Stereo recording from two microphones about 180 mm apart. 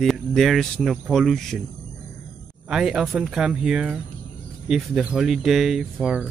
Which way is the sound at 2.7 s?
5° right (ahead or behind).